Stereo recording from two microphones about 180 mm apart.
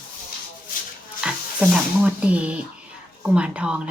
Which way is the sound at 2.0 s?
5° right (ahead or behind).